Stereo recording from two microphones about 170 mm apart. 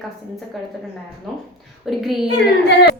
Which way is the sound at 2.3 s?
75° left (ahead or behind).